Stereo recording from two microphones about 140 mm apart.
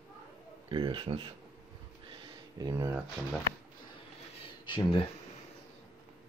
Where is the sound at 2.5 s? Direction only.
20° right (ahead or behind).